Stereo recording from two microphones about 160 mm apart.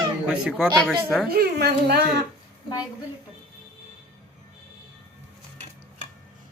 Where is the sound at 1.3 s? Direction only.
75° right (ahead or behind).